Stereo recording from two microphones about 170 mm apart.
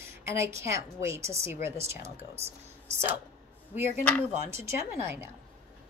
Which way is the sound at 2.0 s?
40° right (ahead or behind).